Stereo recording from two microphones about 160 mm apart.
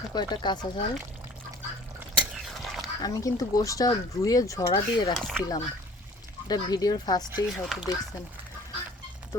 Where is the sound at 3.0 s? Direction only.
20° left (ahead or behind).